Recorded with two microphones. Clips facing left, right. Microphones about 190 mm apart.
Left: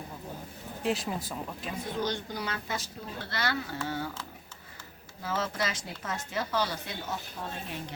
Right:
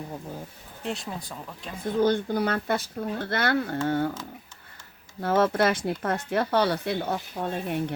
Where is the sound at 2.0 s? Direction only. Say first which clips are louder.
Right 12 dB; 55° right (ahead or behind).